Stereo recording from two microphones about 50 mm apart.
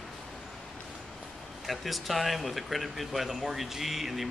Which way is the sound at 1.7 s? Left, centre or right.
Centre.